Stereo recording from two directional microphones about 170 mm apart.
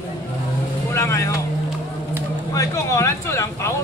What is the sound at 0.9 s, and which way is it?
Speech, 15° left (ahead or behind).